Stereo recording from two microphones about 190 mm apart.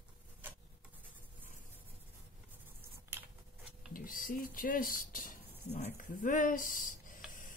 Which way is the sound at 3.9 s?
45° left (ahead or behind).